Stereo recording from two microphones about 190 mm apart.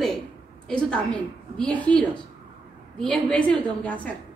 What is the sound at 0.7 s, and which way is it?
A woman's voice, 5° left (ahead or behind).